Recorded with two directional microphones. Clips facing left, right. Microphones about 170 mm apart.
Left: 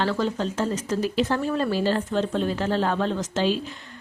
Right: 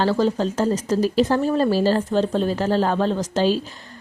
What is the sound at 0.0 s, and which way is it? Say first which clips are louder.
A woman's voice: right 5 dB; 35° right (ahead or behind).